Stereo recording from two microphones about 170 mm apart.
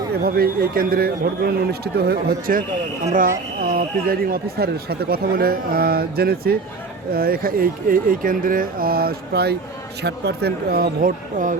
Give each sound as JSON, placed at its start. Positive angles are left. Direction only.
{"t": 0.1, "sound": "speech", "side_deg": -65}